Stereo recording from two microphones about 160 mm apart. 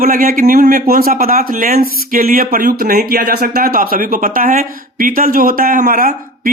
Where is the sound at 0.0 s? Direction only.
65° right (ahead or behind).